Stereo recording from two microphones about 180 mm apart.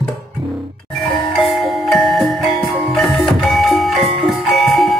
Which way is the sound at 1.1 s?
Centre (ahead or behind).